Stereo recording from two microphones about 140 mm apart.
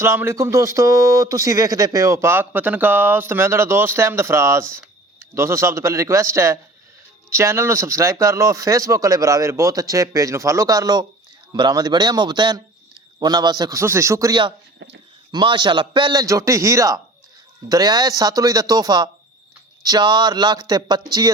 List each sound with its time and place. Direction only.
0.0 s a man's voice: 20° right (ahead or behind)
16.2 s speech: 20° right (ahead or behind)